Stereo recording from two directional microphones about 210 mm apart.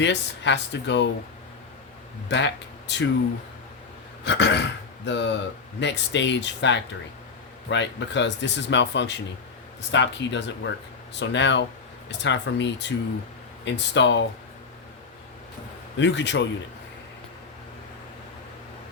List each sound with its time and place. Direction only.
0.0 s speech: 55° left (ahead or behind)
2.3 s speech: 60° left (ahead or behind)
4.2 s speech: 55° left (ahead or behind)
16.0 s speech: 55° left (ahead or behind)